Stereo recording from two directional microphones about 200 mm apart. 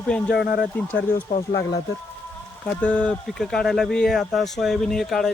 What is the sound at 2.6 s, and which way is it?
Speech, 5° left (ahead or behind).